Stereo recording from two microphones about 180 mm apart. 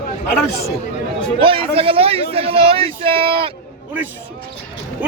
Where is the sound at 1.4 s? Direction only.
30° right (ahead or behind).